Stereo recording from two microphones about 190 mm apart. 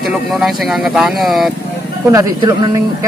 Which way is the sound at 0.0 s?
Centre (ahead or behind).